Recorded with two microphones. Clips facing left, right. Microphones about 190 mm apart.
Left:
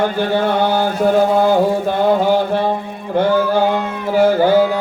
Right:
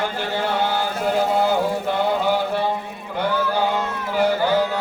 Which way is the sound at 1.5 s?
45° left (ahead or behind).